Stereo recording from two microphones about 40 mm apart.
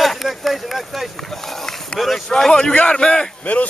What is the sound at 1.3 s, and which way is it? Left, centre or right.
Run, centre.